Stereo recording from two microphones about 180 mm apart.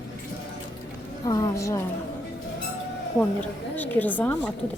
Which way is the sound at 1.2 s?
20° left (ahead or behind).